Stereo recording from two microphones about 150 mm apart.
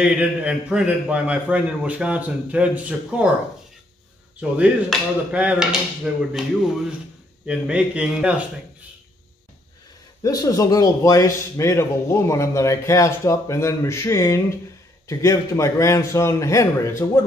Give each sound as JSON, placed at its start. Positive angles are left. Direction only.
{"t": 0.0, "sound": "a man's voice", "side_deg": -5}
{"t": 4.4, "sound": "a man's voice", "side_deg": -5}
{"t": 7.4, "sound": "a man's voice", "side_deg": -5}
{"t": 10.2, "sound": "a man's voice", "side_deg": 25}